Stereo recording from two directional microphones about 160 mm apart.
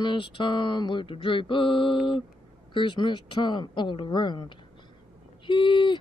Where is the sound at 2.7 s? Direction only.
30° left (ahead or behind).